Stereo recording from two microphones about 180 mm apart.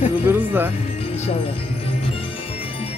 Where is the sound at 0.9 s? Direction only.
35° left (ahead or behind).